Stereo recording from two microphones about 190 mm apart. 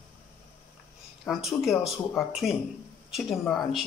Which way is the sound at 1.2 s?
Centre (ahead or behind).